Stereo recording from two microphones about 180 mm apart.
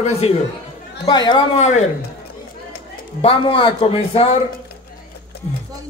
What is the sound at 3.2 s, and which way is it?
A man's voice, 30° left (ahead or behind).